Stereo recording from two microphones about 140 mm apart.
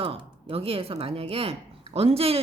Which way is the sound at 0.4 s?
40° right (ahead or behind).